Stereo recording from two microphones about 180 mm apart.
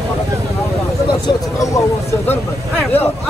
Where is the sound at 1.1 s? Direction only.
20° left (ahead or behind).